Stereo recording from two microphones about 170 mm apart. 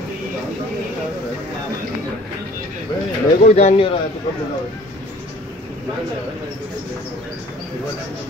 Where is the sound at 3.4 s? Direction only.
40° left (ahead or behind).